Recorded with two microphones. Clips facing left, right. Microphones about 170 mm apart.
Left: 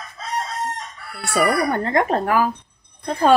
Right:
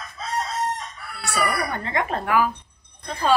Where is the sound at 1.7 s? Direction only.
50° left (ahead or behind).